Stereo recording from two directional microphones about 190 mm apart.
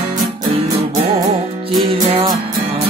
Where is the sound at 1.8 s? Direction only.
25° right (ahead or behind).